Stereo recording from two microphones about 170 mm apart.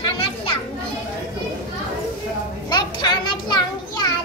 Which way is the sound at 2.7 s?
25° left (ahead or behind).